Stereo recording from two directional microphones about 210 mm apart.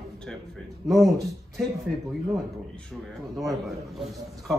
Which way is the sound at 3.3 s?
Centre (ahead or behind).